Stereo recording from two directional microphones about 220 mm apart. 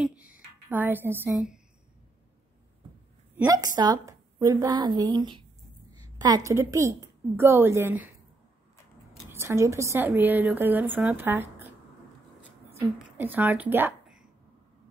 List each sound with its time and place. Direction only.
0.0 s a sound: 5° right (ahead or behind)
3.3 s a woman's voice: 15° right (ahead or behind)
9.3 s a woman's voice: 10° right (ahead or behind)
13.2 s speech: 10° right (ahead or behind)